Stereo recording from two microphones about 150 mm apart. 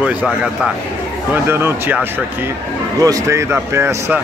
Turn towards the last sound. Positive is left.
turn(degrees=-15)  # may be behind; listen again after turning